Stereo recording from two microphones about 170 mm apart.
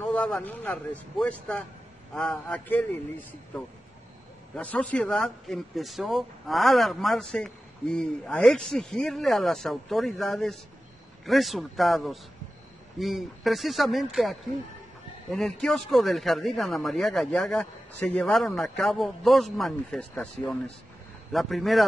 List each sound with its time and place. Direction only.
0.0 s speech: 5° left (ahead or behind)